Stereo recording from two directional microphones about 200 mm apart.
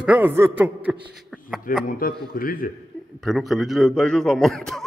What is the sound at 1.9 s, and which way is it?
Speech, 45° left (ahead or behind).